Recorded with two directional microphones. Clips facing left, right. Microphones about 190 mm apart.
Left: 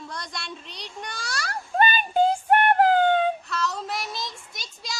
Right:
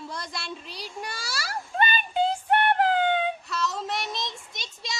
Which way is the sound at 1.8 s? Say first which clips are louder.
Left 4 dB; 45° left (ahead or behind).